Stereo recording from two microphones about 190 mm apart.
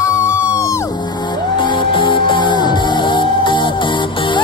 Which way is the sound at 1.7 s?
25° left (ahead or behind).